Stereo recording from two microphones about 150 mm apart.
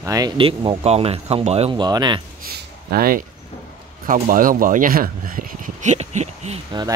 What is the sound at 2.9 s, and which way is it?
Speech, 75° right (ahead or behind).